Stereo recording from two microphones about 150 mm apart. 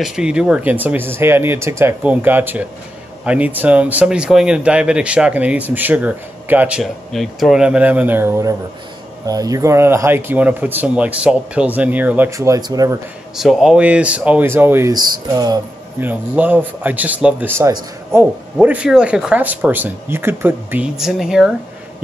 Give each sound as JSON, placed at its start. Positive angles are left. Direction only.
{"t": 0.0, "sound": "speech", "side_deg": -5}
{"t": 6.8, "sound": "speech", "side_deg": 0}
{"t": 13.4, "sound": "speech", "side_deg": -5}
{"t": 16.0, "sound": "speech", "side_deg": -10}
{"t": 18.6, "sound": "speech", "side_deg": -10}